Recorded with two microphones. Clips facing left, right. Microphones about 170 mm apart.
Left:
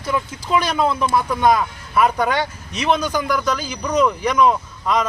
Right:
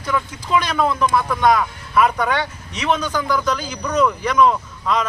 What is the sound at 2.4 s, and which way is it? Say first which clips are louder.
Speech: left 2 dB; 35° left (ahead or behind).